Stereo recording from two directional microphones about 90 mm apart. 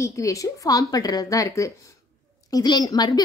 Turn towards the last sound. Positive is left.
turn(degrees=50)  # may be behind; listen again after turning